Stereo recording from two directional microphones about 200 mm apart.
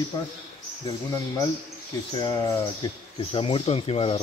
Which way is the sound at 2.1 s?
20° left (ahead or behind).